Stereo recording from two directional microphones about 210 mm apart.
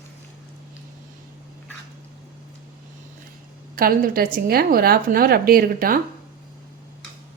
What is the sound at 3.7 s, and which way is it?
A woman's voice, 45° right (ahead or behind).